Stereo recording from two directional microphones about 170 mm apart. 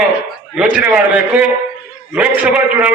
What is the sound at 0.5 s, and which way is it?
A man's voice, 5° right (ahead or behind).